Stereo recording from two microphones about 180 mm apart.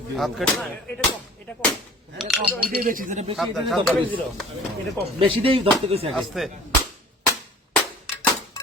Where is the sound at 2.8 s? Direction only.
50° right (ahead or behind).